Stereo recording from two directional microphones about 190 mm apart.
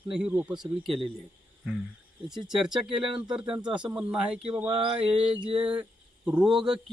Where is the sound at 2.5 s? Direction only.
5° right (ahead or behind).